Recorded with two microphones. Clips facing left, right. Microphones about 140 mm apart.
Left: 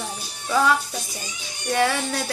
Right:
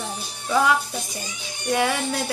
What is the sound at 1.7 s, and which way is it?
Music, 15° right (ahead or behind).